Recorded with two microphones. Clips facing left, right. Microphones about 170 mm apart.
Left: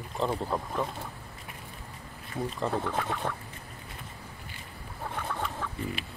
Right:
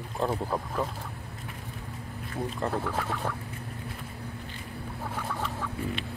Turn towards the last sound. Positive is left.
turn(degrees=0)  # may be behind; listen again after turning